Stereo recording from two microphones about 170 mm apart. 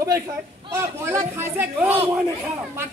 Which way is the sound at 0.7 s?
15° right (ahead or behind).